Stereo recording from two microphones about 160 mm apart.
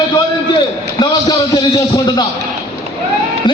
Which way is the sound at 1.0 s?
25° left (ahead or behind).